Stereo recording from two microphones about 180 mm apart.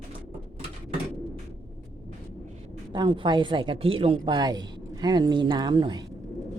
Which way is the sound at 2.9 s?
25° right (ahead or behind).